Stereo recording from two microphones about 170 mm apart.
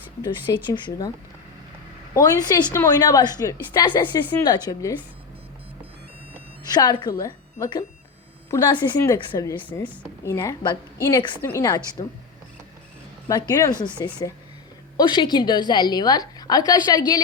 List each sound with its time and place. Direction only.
0.7 s a woman's voice: 20° left (ahead or behind)
2.1 s a woman's voice: 20° left (ahead or behind)
6.7 s a woman's voice: 25° left (ahead or behind)
9.6 s a woman's voice: 10° left (ahead or behind)
13.5 s a woman's voice: 20° left (ahead or behind)